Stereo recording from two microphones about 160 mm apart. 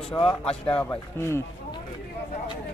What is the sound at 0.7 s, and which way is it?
Speech, 10° left (ahead or behind).